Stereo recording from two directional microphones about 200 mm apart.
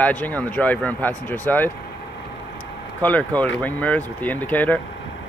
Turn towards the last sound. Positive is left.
turn(degrees=10)  # may be behind; listen again after turning